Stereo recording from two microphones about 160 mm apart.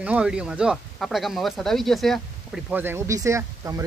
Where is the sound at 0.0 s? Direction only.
5° right (ahead or behind).